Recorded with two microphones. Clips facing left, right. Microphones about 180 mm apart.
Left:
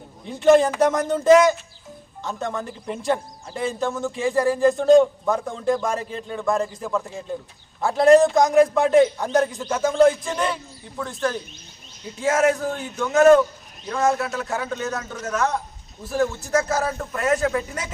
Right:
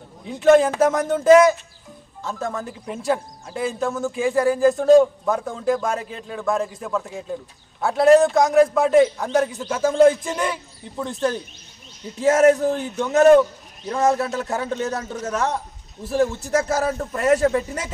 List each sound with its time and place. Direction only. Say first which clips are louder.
0.2 s a man's voice: right 1 dB; centre (ahead or behind); by 11.3 s 20° right (ahead or behind)
12.2 s a man's voice: right 5 dB; 35° right (ahead or behind)
12.5 s a man's voice: right 4 dB; 25° right (ahead or behind)